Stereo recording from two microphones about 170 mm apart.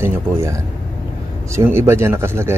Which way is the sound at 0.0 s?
15° right (ahead or behind).